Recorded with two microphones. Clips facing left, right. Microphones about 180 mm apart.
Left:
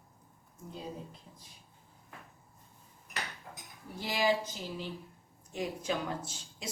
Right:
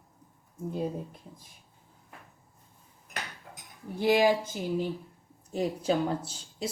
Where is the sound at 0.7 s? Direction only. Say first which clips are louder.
Right 10 dB; 55° right (ahead or behind).